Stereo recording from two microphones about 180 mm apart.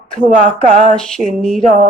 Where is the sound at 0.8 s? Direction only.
5° left (ahead or behind).